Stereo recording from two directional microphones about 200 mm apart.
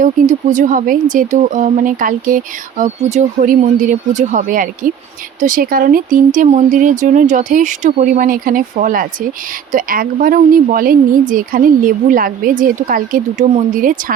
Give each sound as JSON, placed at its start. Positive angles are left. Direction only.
{"t": 0.0, "sound": "a woman's voice", "side_deg": -40}